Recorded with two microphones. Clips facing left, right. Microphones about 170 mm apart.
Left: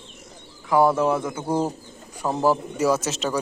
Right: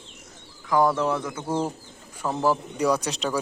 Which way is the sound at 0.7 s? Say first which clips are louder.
Left 3 dB; 25° left (ahead or behind).